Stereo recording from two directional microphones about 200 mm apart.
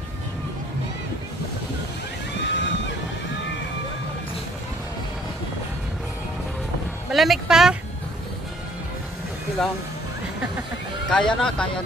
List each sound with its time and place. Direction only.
2.4 s a sound: 60° left (ahead or behind)
7.1 s speech: centre (ahead or behind)
11.1 s speech: 5° left (ahead or behind)